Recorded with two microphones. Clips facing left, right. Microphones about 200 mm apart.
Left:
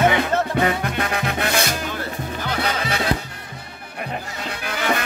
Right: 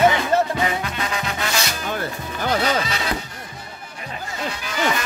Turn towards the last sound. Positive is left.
turn(degrees=60)  # may be behind; listen again after turning